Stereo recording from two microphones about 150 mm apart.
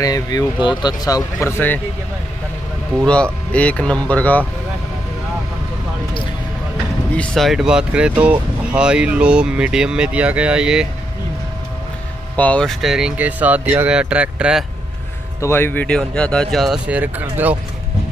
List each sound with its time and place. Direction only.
0.0 s speech: 25° left (ahead or behind)
3.1 s speech: 10° left (ahead or behind)
7.2 s speech: centre (ahead or behind)
12.4 s speech: 10° left (ahead or behind); by 14.6 s 5° right (ahead or behind)
15.4 s speech: 15° left (ahead or behind); by 17.6 s 10° right (ahead or behind)